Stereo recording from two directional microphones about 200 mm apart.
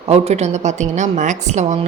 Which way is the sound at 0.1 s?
30° right (ahead or behind).